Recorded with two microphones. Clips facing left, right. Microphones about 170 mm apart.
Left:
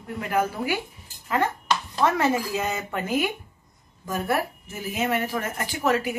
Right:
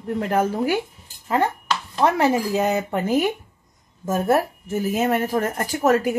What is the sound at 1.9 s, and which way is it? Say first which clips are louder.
Speech: right 4 dB; 30° right (ahead or behind).